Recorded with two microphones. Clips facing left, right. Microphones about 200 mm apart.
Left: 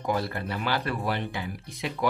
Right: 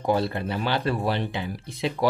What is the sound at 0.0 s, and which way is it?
Speech, 25° right (ahead or behind).